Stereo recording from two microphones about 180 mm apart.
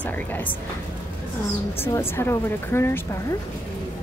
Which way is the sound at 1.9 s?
15° left (ahead or behind).